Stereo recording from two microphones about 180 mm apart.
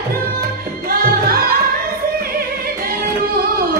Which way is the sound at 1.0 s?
55° right (ahead or behind).